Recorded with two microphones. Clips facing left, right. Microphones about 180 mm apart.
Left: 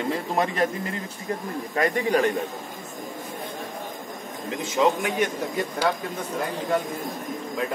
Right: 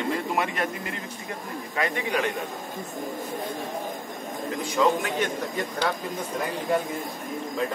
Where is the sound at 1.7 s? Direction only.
40° left (ahead or behind).